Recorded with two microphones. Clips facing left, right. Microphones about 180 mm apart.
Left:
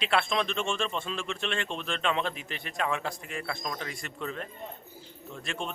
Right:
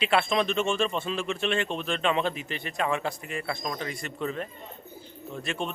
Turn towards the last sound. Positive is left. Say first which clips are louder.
# right 4 dB
turn(degrees=0)  # may be behind; listen again after turning